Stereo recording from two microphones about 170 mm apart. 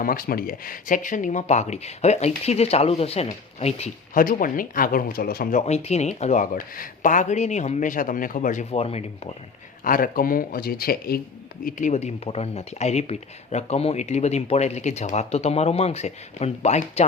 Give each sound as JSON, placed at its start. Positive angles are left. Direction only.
{"t": 0.0, "sound": "speech", "side_deg": 60}
{"t": 4.1, "sound": "speech", "side_deg": 55}
{"t": 8.7, "sound": "speech", "side_deg": 35}
{"t": 9.8, "sound": "speech", "side_deg": 55}
{"t": 11.6, "sound": "speech", "side_deg": 45}